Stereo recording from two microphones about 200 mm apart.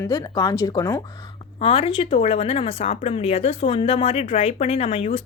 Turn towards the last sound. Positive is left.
turn(degrees=30)  # may be behind; listen again after turning